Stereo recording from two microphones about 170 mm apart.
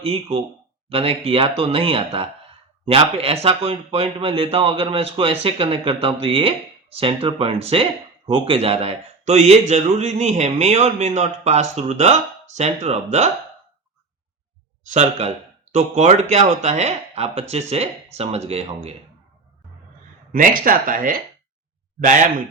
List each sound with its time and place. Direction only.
0.0 s a man's voice: 35° right (ahead or behind)
14.8 s a man's voice: 40° right (ahead or behind)
20.3 s speech: 55° right (ahead or behind)